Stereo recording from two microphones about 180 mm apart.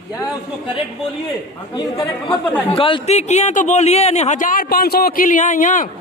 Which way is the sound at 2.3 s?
10° left (ahead or behind).